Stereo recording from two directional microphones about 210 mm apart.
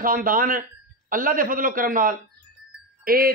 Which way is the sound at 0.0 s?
40° right (ahead or behind).